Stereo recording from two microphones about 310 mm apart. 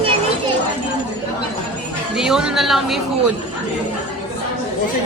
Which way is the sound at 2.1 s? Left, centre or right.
Centre.